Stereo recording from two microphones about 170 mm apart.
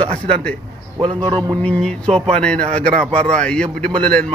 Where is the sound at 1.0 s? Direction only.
30° right (ahead or behind).